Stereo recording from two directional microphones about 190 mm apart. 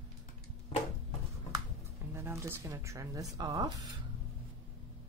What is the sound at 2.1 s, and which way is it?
Speech, 15° right (ahead or behind).